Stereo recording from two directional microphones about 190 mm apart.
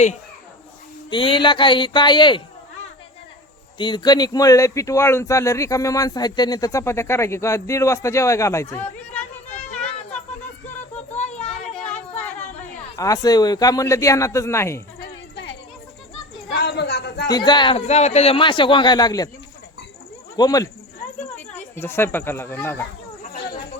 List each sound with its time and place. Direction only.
1.1 s a man's voice: 25° left (ahead or behind)
3.8 s speech: 25° left (ahead or behind)
11.1 s a sound: 35° left (ahead or behind)
13.0 s speech: 20° left (ahead or behind)
16.6 s a sound: 60° left (ahead or behind)
17.3 s a man's voice: 25° left (ahead or behind)
20.3 s speech: 20° left (ahead or behind)
21.8 s speech: 10° left (ahead or behind)
23.2 s a sound: 45° left (ahead or behind)